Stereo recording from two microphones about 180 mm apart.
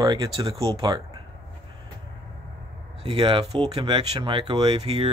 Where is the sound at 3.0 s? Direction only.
30° right (ahead or behind).